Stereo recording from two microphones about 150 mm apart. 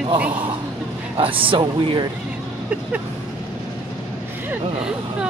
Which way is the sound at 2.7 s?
10° right (ahead or behind).